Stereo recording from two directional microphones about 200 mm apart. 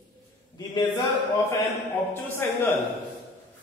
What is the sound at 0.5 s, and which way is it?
A man's voice, 20° left (ahead or behind).